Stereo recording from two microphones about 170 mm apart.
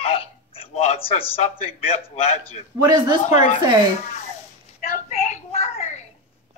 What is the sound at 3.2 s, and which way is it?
Speech, 40° left (ahead or behind).